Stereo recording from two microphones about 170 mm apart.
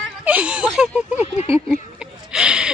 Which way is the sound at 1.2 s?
35° left (ahead or behind).